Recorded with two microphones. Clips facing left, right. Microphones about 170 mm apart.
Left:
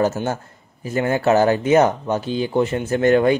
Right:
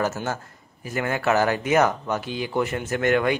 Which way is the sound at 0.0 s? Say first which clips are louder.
Left 6 dB; 30° left (ahead or behind).